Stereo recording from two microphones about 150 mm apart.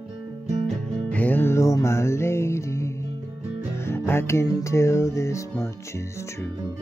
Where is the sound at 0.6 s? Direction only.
5° left (ahead or behind).